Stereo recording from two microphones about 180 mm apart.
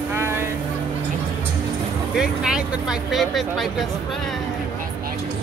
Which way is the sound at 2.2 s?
5° right (ahead or behind).